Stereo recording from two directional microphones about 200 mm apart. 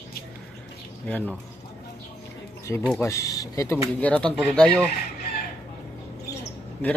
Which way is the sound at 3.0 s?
15° left (ahead or behind).